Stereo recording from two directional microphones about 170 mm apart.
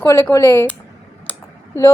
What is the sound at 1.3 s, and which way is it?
Clicking, 15° left (ahead or behind).